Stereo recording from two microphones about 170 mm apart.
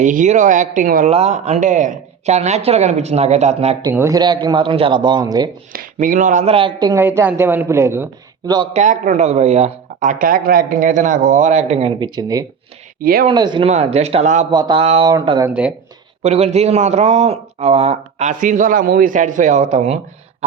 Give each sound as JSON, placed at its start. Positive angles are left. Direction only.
{"t": 0.0, "sound": "speech", "side_deg": -50}
{"t": 1.1, "sound": "a man's voice", "side_deg": -40}
{"t": 3.9, "sound": "a man's voice", "side_deg": -20}
{"t": 5.7, "sound": "a man's voice", "side_deg": -55}
{"t": 7.0, "sound": "speech", "side_deg": -10}
{"t": 8.7, "sound": "speech", "side_deg": -45}
{"t": 13.0, "sound": "speech", "side_deg": -60}
{"t": 13.2, "sound": "a man's voice", "side_deg": -25}
{"t": 13.7, "sound": "a man's voice", "side_deg": -40}
{"t": 14.5, "sound": "a man's voice", "side_deg": -25}
{"t": 15.4, "sound": "speech", "side_deg": -5}
{"t": 16.2, "sound": "a man's voice", "side_deg": -40}